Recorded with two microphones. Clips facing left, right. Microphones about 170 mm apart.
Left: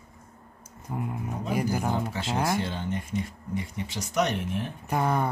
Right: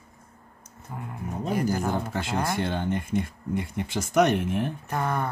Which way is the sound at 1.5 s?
10° left (ahead or behind).